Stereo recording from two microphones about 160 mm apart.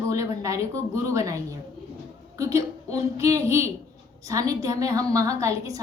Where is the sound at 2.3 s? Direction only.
20° right (ahead or behind).